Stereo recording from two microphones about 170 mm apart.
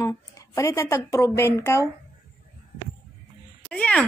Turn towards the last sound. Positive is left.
turn(degrees=5)  # may be behind; listen again after turning